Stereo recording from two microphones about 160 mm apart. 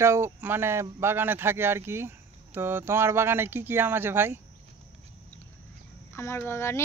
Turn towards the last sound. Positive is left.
turn(degrees=15)  # may be behind; listen again after turning